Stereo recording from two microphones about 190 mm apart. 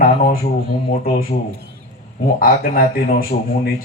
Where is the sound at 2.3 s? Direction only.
50° left (ahead or behind).